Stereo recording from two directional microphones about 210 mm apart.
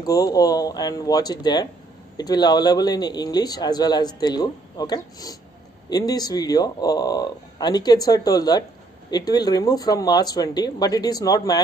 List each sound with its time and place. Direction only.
0.0 s a man's voice: 15° left (ahead or behind)